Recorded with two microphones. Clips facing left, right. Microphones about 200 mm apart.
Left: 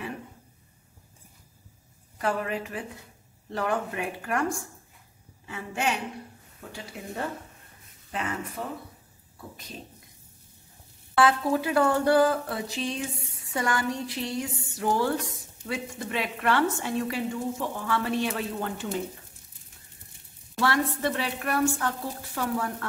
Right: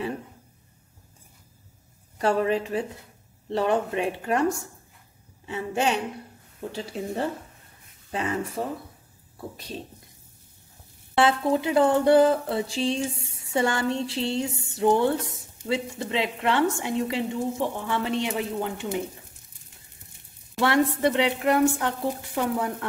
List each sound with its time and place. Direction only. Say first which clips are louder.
2.1 s speech: right 6 dB; 30° right (ahead or behind)
5.5 s speech: right 5 dB; 25° right (ahead or behind)
11.1 s speech: right 1 dB; 25° right (ahead or behind)
20.5 s speech: right 4 dB; 20° right (ahead or behind)